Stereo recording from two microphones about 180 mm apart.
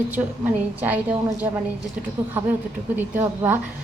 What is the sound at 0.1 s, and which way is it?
Speech, 10° right (ahead or behind).